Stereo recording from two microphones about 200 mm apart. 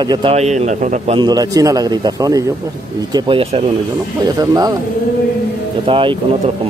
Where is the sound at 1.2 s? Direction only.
20° right (ahead or behind).